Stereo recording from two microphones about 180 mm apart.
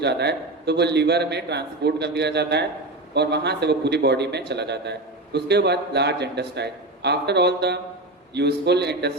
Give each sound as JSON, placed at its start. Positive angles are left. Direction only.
{"t": 0.0, "sound": "a man's voice", "side_deg": -70}